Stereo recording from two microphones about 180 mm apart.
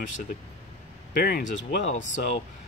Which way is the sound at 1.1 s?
60° left (ahead or behind).